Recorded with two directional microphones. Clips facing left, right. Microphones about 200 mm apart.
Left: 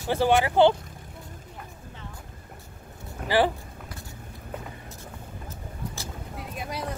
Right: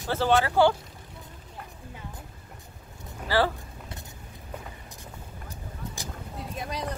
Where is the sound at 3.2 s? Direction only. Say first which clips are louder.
Left 2 dB; 5° left (ahead or behind).